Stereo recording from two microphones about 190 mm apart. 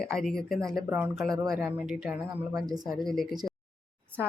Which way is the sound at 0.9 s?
10° right (ahead or behind).